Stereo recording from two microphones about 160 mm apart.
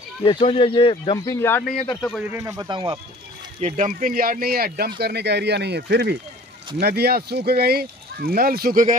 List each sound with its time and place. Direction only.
0.2 s speech: 35° left (ahead or behind)
1.2 s speech: 15° left (ahead or behind)
2.0 s speech: centre (ahead or behind)
2.3 s speech: 20° right (ahead or behind)
3.6 s speech: 50° right (ahead or behind)